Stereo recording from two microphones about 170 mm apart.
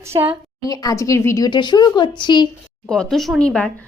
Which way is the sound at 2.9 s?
5° left (ahead or behind).